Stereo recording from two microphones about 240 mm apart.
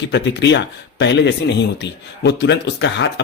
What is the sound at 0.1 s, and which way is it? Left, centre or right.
Speech, left.